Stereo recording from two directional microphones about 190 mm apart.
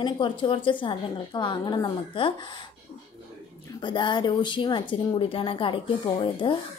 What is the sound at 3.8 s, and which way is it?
A woman's voice, 25° left (ahead or behind).